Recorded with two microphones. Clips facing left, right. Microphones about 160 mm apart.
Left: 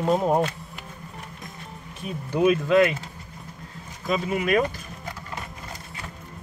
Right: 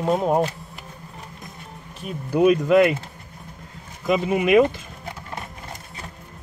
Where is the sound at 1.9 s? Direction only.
5° right (ahead or behind).